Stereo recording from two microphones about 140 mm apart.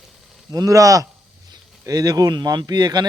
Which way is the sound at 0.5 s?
25° right (ahead or behind).